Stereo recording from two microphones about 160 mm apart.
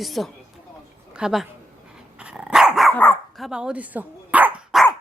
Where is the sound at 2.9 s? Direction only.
10° left (ahead or behind).